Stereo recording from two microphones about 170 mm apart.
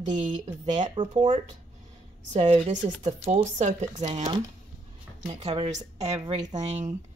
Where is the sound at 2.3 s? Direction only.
35° right (ahead or behind).